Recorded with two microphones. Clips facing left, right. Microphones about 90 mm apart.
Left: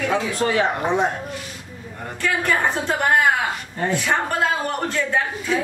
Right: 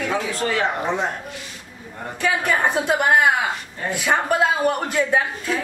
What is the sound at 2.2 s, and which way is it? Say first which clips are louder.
Speech: right 1 dB; 10° right (ahead or behind).